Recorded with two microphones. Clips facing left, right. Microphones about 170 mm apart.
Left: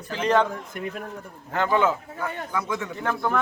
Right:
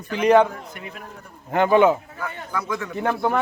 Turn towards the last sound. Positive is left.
turn(degrees=-20)  # may be behind; listen again after turning